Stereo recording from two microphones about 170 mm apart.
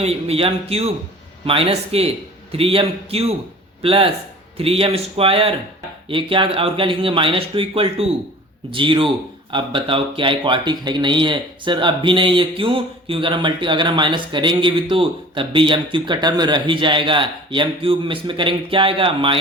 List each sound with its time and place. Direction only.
0.0 s speech: 35° right (ahead or behind)